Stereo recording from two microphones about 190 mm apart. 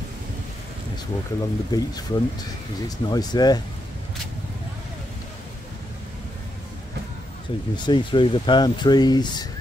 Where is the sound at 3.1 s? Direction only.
20° left (ahead or behind).